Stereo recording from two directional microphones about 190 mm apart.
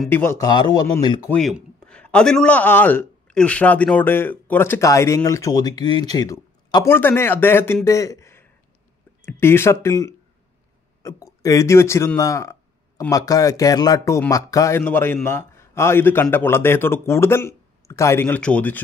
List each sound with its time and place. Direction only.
0.1 s speech: 15° left (ahead or behind)
1.8 s a man's voice: 5° left (ahead or behind)